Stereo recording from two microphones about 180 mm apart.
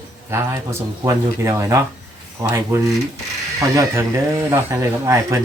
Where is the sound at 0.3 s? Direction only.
15° right (ahead or behind).